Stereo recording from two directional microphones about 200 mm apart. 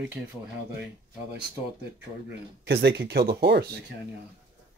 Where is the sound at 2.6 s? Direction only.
55° right (ahead or behind).